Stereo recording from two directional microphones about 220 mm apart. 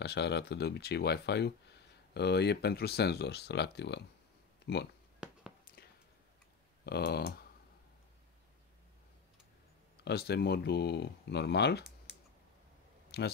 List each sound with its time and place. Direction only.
0.0 s speech: 50° left (ahead or behind)
6.9 s speech: 45° left (ahead or behind)
10.0 s speech: 50° left (ahead or behind)
13.1 s speech: 45° left (ahead or behind)